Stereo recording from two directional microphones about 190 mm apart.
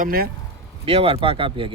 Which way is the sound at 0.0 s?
50° right (ahead or behind).